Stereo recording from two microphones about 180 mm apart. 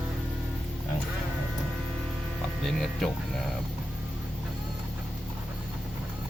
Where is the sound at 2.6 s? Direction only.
Centre (ahead or behind).